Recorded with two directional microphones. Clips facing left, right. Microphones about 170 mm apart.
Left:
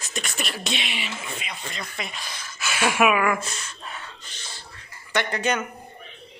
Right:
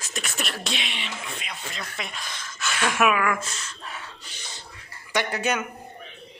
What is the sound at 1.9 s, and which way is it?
Speech, centre (ahead or behind).